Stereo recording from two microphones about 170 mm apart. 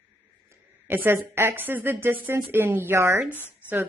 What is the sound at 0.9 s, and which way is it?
A woman's voice, 10° right (ahead or behind).